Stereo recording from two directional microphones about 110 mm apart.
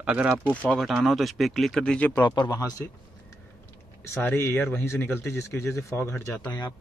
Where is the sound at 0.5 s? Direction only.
15° left (ahead or behind).